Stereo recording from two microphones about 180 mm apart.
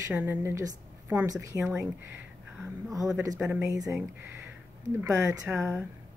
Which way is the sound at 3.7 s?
20° right (ahead or behind).